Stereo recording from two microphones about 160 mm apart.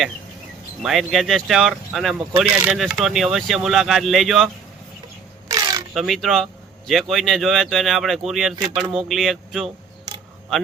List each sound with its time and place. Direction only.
0.8 s speech: centre (ahead or behind)
5.5 s a sound: 20° right (ahead or behind)
5.9 s speech: centre (ahead or behind)